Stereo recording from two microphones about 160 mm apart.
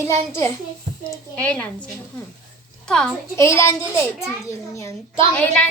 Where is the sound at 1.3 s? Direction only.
10° left (ahead or behind).